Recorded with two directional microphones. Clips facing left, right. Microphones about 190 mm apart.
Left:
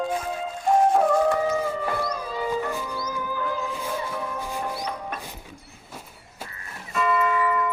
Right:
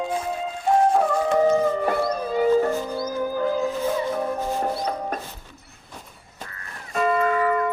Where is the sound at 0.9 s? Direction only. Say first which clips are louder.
Even; centre (ahead or behind).